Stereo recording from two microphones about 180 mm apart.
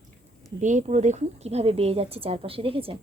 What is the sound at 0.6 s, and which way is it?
A woman's voice, 40° right (ahead or behind).